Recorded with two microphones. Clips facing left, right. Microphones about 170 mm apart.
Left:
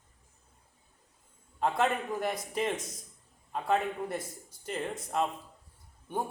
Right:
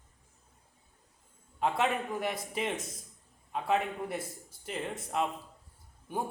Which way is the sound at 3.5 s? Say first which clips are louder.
Left 1 dB; 5° right (ahead or behind).